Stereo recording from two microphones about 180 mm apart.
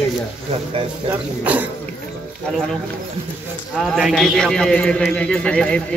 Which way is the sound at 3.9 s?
Centre (ahead or behind).